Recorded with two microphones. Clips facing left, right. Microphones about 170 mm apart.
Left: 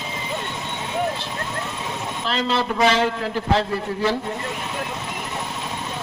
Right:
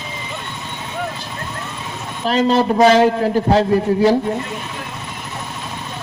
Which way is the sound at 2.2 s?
45° right (ahead or behind).